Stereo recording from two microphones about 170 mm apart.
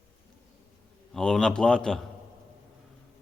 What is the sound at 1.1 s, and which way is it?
Speech, 5° left (ahead or behind).